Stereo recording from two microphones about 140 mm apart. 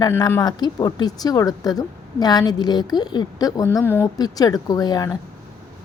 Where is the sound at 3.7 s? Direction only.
15° left (ahead or behind).